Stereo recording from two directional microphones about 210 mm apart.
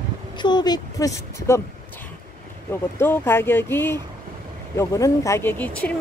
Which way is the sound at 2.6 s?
10° left (ahead or behind).